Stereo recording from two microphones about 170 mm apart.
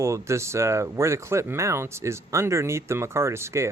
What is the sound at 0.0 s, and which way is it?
Speech, 15° right (ahead or behind).